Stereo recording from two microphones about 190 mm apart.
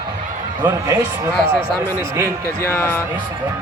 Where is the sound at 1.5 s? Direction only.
30° left (ahead or behind).